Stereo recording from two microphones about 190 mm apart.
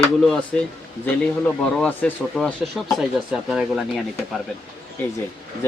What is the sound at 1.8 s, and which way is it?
Speech, 5° left (ahead or behind).